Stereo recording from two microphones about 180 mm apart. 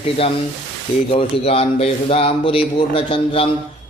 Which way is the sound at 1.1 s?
35° left (ahead or behind).